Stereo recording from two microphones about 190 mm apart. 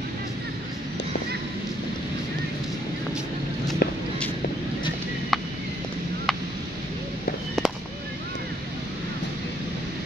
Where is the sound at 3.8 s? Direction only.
55° left (ahead or behind).